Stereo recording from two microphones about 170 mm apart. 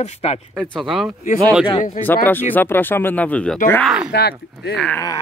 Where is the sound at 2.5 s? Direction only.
10° left (ahead or behind).